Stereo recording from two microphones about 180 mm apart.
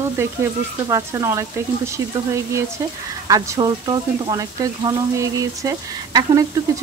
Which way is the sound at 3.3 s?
25° right (ahead or behind).